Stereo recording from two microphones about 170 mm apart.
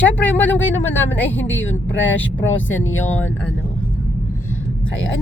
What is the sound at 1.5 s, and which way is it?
Speech, 90° left.